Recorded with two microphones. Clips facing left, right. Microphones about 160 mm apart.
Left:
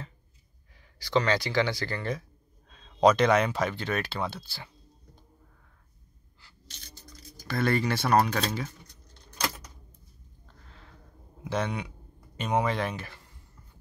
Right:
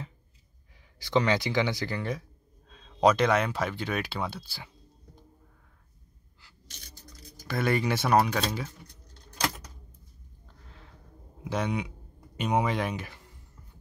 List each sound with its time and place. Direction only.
0.9 s speech: 20° right (ahead or behind)
7.4 s speech: 15° right (ahead or behind)
11.4 s speech: 10° right (ahead or behind)